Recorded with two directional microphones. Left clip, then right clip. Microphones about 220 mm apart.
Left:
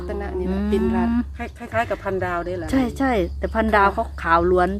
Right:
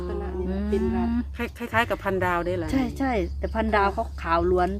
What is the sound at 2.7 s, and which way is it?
Speech, 15° left (ahead or behind).